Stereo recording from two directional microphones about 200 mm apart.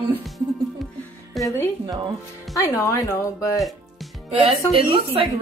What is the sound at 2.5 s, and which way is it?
Speech, 15° left (ahead or behind).